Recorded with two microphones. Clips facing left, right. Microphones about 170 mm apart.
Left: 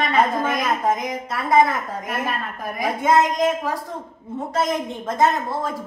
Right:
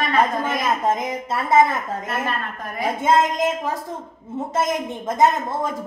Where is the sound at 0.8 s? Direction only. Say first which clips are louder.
Even; 25° right (ahead or behind).